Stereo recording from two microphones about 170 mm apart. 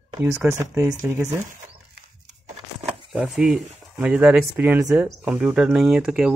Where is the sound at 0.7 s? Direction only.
10° right (ahead or behind).